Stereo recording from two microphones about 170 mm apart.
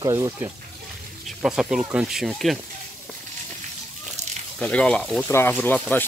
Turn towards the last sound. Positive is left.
turn(degrees=10)  # may be behind; listen again after turning